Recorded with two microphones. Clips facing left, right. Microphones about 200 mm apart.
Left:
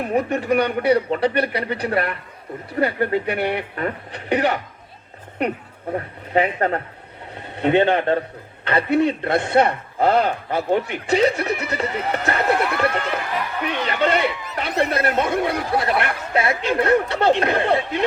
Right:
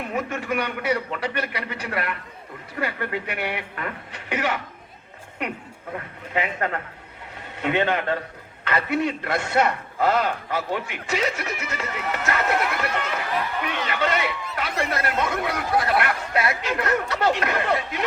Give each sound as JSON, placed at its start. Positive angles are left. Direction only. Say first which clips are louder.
{"t": 0.0, "sound": "a man's voice", "louder": "left 7 dB", "side_deg": 35}
{"t": 5.9, "sound": "a man's voice", "louder": "left 7 dB", "side_deg": 35}
{"t": 14.4, "sound": "speech", "louder": "left 3 dB", "side_deg": 20}
{"t": 14.8, "sound": "speech", "louder": "left 6 dB", "side_deg": 35}